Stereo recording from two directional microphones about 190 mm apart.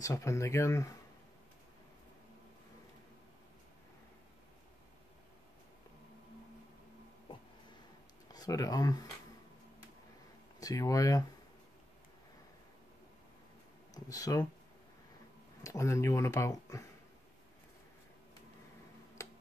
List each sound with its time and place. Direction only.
0.0 s speech: 15° left (ahead or behind)
8.3 s speech: 20° left (ahead or behind)
10.6 s speech: 20° left (ahead or behind)
13.9 s speech: 20° left (ahead or behind)
15.6 s speech: 15° left (ahead or behind)
19.2 s tick-tock: 15° left (ahead or behind)